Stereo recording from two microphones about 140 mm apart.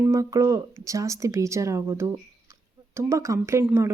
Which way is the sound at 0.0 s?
25° right (ahead or behind).